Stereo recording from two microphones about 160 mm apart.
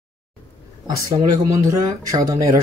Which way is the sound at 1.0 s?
20° right (ahead or behind).